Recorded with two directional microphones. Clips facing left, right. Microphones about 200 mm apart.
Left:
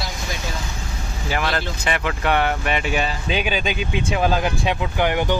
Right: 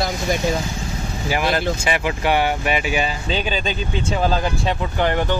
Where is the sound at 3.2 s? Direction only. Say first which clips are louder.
Even; 10° left (ahead or behind).